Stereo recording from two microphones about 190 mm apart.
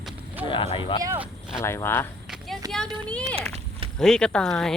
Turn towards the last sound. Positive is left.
turn(degrees=0)  # may be behind; listen again after turning